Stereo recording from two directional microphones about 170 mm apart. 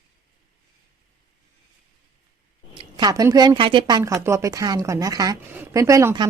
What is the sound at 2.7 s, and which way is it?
Speech, 25° right (ahead or behind).